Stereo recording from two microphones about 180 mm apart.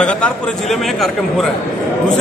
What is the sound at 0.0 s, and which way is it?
A man's voice, 5° left (ahead or behind).